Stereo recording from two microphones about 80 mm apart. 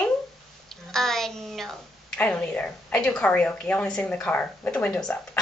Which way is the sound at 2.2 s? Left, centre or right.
Centre.